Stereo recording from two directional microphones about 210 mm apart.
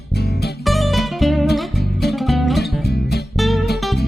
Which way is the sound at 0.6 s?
Centre (ahead or behind).